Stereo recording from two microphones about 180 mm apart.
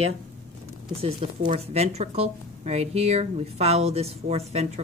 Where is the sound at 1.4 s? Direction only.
40° right (ahead or behind).